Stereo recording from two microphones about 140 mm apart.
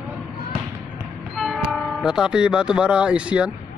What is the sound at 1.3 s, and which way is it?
Speech, centre (ahead or behind).